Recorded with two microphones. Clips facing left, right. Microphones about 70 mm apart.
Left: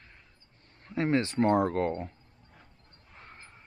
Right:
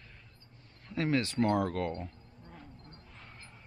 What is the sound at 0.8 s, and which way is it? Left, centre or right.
Speech, left.